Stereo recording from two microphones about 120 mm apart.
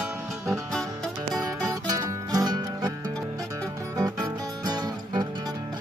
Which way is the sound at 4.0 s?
35° right (ahead or behind).